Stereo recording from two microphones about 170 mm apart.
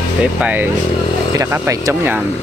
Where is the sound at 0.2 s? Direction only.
10° right (ahead or behind).